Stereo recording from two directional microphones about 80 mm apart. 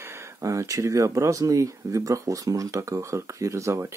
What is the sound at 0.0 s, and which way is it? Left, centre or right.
Speech, right.